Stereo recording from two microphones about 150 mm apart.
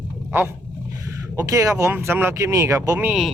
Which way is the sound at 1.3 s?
20° right (ahead or behind).